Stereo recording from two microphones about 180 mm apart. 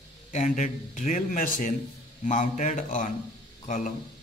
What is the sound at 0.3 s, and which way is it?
A man's voice, 45° left (ahead or behind).